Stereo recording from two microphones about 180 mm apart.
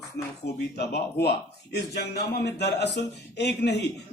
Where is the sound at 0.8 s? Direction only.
65° left (ahead or behind).